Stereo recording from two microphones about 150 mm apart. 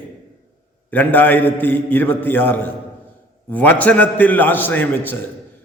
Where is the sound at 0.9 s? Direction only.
10° left (ahead or behind).